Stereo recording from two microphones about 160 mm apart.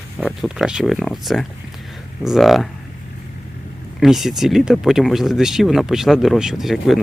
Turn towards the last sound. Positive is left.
turn(degrees=0)  # may be behind; listen again after turning